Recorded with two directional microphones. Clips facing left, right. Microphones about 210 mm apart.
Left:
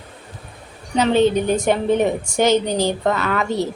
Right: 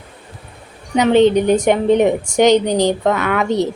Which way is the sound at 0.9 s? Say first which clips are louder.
Right 4 dB; 15° right (ahead or behind).